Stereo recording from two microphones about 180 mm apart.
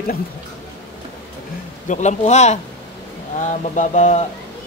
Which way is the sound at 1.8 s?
40° left (ahead or behind).